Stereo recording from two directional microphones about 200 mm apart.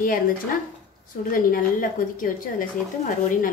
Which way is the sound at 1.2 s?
45° left (ahead or behind).